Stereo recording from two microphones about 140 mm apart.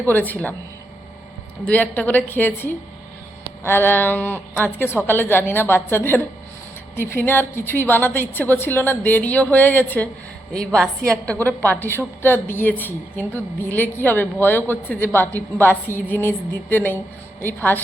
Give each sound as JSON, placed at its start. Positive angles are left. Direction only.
{"t": 0.0, "sound": "a woman's voice", "side_deg": 10}
{"t": 1.6, "sound": "a woman's voice", "side_deg": 10}
{"t": 11.7, "sound": "a woman's voice", "side_deg": 15}